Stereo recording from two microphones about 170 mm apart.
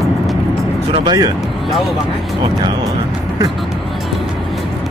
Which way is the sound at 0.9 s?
25° right (ahead or behind).